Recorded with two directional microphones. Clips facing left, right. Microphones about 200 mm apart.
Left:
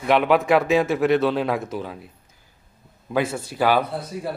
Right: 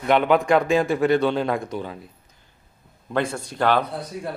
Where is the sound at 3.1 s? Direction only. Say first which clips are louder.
Left 1 dB; 5° left (ahead or behind).